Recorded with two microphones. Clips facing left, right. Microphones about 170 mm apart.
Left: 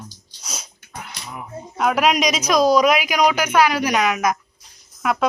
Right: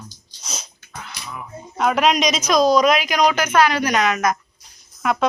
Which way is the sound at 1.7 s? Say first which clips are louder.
Even; 5° left (ahead or behind).